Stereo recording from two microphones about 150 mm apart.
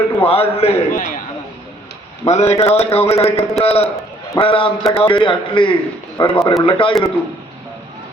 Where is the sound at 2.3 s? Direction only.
50° left (ahead or behind).